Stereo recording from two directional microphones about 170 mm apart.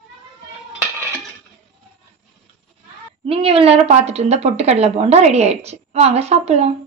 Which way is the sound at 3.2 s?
35° right (ahead or behind).